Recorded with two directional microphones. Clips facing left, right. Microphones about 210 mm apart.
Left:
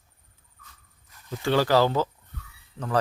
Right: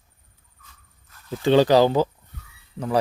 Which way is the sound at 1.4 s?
20° right (ahead or behind).